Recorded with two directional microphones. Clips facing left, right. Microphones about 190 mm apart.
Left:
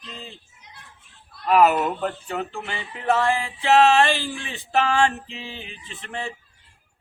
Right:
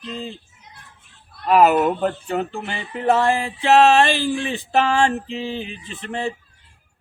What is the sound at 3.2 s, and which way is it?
Speech, 40° right (ahead or behind).